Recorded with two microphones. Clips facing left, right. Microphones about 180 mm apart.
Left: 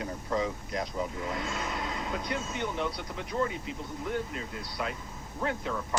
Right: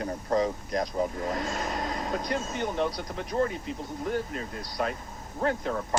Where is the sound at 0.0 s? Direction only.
45° right (ahead or behind).